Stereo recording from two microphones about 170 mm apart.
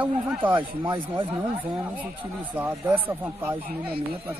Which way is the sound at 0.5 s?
30° right (ahead or behind).